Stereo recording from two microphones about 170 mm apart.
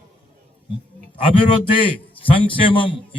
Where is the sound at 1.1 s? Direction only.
30° left (ahead or behind).